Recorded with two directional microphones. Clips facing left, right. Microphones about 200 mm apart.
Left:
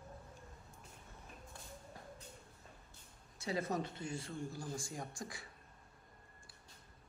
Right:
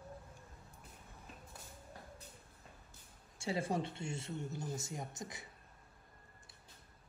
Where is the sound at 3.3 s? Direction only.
30° right (ahead or behind).